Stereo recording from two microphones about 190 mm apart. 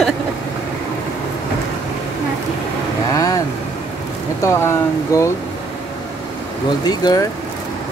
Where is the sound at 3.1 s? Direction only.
20° left (ahead or behind).